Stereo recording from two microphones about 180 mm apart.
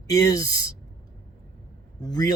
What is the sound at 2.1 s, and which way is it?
Speech, 20° left (ahead or behind).